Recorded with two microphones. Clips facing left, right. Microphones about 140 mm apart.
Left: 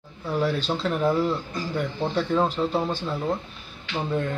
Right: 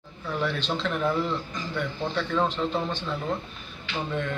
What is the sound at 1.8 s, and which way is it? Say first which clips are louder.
Speech: left 3 dB; 35° left (ahead or behind).